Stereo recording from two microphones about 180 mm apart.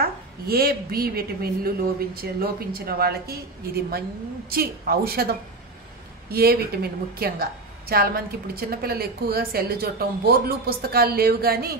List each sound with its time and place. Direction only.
0.0 s a woman's voice: 55° right (ahead or behind)
6.3 s a woman's voice: 60° right (ahead or behind)